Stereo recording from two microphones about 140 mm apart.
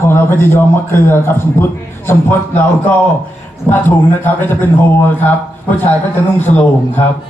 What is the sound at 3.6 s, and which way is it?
A man's voice, 15° left (ahead or behind).